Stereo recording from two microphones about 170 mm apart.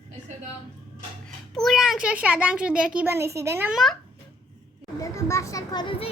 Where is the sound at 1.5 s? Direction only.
Centre (ahead or behind).